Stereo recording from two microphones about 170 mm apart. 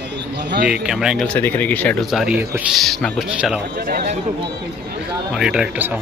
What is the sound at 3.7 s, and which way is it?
Speech, 60° right (ahead or behind).